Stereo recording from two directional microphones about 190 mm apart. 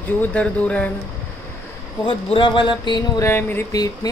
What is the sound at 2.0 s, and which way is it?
Speech, 25° left (ahead or behind).